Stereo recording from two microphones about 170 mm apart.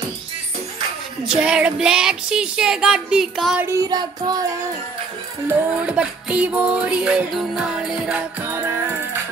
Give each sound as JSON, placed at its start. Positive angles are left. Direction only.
{"t": 1.4, "sound": "child singing", "side_deg": -5}
{"t": 3.6, "sound": "child singing", "side_deg": -20}
{"t": 5.5, "sound": "music", "side_deg": -10}